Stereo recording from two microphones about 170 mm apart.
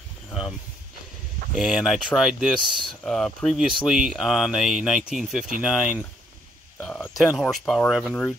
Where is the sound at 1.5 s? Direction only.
Centre (ahead or behind).